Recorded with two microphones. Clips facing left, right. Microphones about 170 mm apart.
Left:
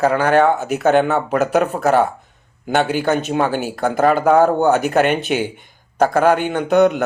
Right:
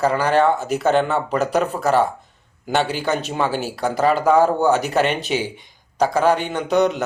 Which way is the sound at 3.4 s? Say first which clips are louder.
Left 3 dB; 55° left (ahead or behind).